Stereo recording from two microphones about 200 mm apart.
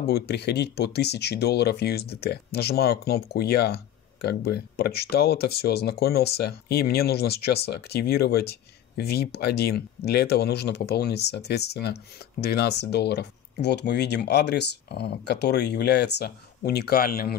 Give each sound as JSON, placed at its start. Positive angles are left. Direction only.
{"t": 0.0, "sound": "speech", "side_deg": 55}